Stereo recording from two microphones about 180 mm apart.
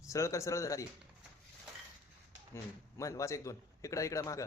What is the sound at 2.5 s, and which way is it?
A man's voice, 15° left (ahead or behind).